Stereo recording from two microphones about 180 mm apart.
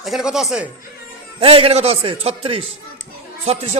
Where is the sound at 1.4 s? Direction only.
30° right (ahead or behind).